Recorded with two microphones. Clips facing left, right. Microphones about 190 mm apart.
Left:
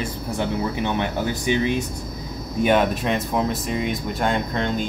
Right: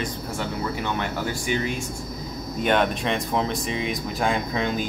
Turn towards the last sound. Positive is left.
turn(degrees=-5)  # may be behind; listen again after turning